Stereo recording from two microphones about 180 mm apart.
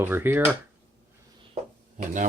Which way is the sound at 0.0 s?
10° right (ahead or behind).